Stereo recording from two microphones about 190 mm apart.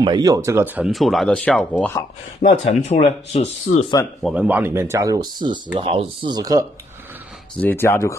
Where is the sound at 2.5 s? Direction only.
40° left (ahead or behind).